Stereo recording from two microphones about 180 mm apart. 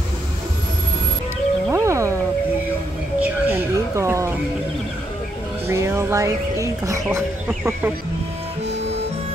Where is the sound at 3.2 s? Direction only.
10° right (ahead or behind).